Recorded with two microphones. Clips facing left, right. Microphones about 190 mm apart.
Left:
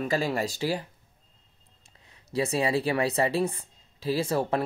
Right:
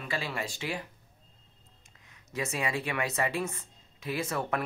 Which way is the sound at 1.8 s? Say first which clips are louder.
Left 7 dB; 30° left (ahead or behind).